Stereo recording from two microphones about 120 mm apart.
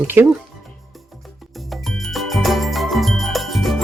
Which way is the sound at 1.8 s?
Centre (ahead or behind).